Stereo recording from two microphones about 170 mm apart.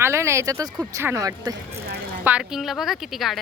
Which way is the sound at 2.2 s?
5° right (ahead or behind).